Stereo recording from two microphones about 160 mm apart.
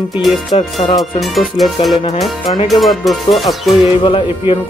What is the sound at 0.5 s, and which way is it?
Speech, 35° left (ahead or behind).